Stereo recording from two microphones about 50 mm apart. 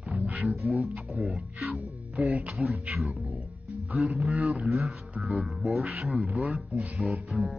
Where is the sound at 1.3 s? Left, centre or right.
Centre.